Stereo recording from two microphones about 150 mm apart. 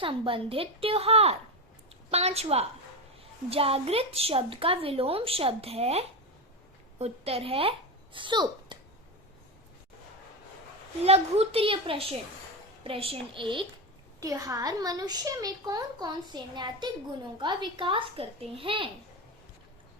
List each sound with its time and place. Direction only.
0.0 s a woman's voice: 35° right (ahead or behind)
11.0 s a woman's voice: 45° right (ahead or behind)
14.2 s a woman's voice: 25° right (ahead or behind)